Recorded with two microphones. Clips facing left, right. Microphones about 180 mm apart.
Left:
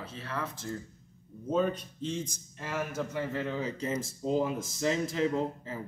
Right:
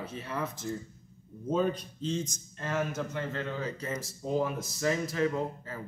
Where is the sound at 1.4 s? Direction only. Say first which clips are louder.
Even; centre (ahead or behind); by 5.8 s 20° left (ahead or behind).